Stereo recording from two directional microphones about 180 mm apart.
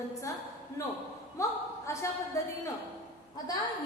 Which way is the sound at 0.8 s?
15° left (ahead or behind).